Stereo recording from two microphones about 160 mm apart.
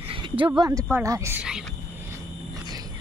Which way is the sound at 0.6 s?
20° right (ahead or behind).